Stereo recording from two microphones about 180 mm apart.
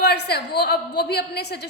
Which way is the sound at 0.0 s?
65° left (ahead or behind).